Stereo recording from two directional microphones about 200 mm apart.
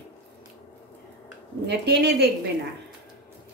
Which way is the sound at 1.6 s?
55° right (ahead or behind).